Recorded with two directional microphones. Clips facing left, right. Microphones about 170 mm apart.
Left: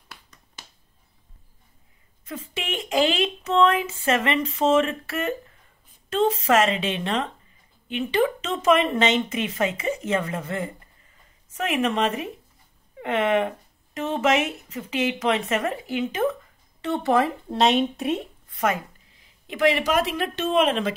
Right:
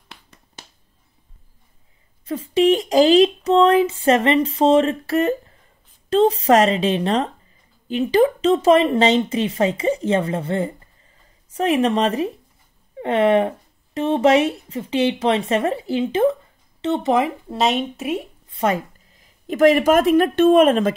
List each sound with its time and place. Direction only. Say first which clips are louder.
2.2 s speech: right 16 dB; 35° right (ahead or behind); by 17.3 s 20° right (ahead or behind)
17.5 s speech: even; centre (ahead or behind)
18.5 s speech: right 4 dB; 30° right (ahead or behind); by 20.9 s 45° right (ahead or behind)